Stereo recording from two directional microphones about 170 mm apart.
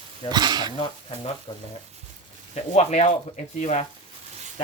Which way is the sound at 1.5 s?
30° left (ahead or behind).